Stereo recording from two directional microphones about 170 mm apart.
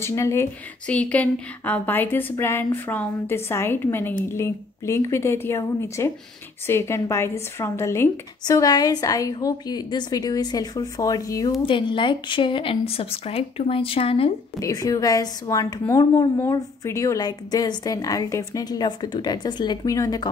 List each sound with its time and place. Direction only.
0.0 s a woman's voice: 15° left (ahead or behind); by 14.3 s 35° left (ahead or behind)
14.6 s a woman's voice: 20° left (ahead or behind)